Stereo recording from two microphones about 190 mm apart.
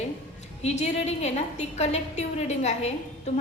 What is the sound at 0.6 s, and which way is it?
A woman's voice, 35° left (ahead or behind).